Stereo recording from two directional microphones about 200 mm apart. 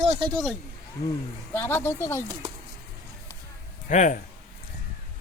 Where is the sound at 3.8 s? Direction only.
40° left (ahead or behind).